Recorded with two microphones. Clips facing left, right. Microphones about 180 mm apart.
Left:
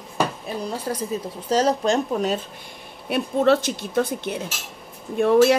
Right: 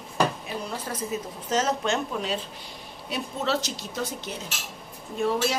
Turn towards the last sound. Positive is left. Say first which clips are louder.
# left 10 dB
turn(degrees=60)  # may be behind; listen again after turning